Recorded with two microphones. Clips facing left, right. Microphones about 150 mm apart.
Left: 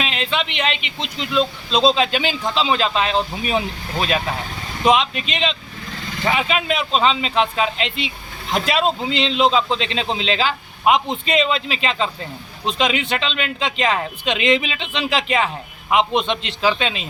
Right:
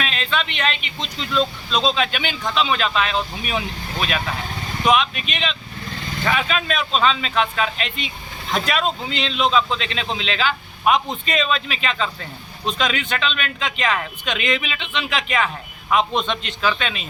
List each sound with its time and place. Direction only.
0.0 s a man's voice: 20° left (ahead or behind)
1.8 s a man's voice: 30° left (ahead or behind)
15.9 s a man's voice: 20° left (ahead or behind)